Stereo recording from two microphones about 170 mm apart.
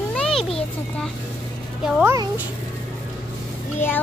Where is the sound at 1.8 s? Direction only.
15° right (ahead or behind).